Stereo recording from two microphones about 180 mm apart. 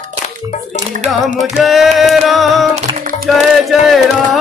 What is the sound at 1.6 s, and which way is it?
Music, centre (ahead or behind).